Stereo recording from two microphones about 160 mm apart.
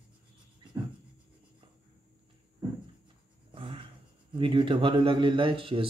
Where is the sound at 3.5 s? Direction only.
30° right (ahead or behind).